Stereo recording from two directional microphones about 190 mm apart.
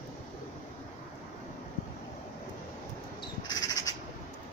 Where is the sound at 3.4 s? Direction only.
20° left (ahead or behind).